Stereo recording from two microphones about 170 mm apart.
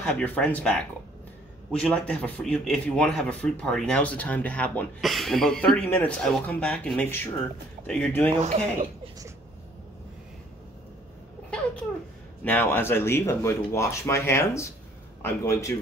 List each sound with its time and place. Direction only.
0.0 s speech: 10° left (ahead or behind)
8.3 s speech: 40° right (ahead or behind)
12.4 s speech: 15° left (ahead or behind)